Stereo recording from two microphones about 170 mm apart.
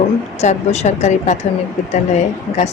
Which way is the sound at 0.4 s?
40° left (ahead or behind).